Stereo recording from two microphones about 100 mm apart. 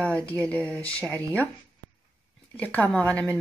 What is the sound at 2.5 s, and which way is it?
Speech, 15° left (ahead or behind).